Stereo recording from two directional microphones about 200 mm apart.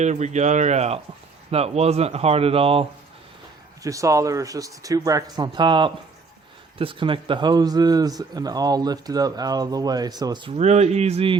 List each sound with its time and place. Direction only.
0.0 s speech: 35° right (ahead or behind)
3.8 s speech: 15° right (ahead or behind)
10.6 s speech: 35° right (ahead or behind)